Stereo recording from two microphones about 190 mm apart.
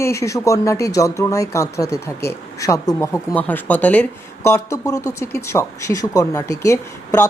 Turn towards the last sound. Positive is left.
turn(degrees=15)  # may be behind; listen again after turning